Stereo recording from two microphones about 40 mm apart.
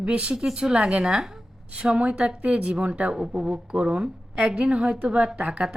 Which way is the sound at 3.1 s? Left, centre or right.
Centre.